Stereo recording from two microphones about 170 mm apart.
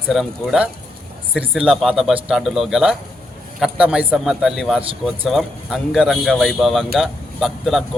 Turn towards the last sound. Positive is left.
turn(degrees=0)  # may be behind; listen again after turning